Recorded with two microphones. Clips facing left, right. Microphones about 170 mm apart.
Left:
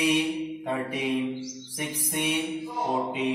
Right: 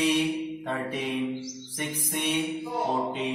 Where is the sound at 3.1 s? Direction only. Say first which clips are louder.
Left 2 dB; 10° left (ahead or behind).